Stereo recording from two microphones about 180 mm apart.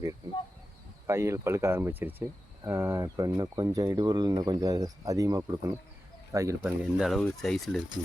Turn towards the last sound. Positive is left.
turn(degrees=0)  # may be behind; listen again after turning